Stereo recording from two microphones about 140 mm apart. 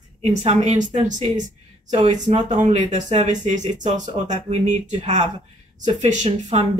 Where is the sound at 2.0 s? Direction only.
60° right (ahead or behind).